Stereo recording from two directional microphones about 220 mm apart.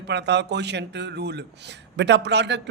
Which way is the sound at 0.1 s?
50° right (ahead or behind).